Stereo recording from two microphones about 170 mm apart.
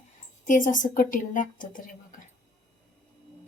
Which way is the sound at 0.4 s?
50° left (ahead or behind).